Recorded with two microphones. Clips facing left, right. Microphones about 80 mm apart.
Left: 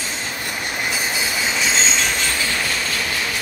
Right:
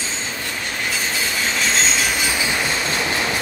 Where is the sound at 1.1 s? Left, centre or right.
Centre.